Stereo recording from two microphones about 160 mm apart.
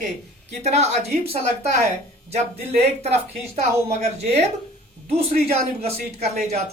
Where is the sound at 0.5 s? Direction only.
45° right (ahead or behind).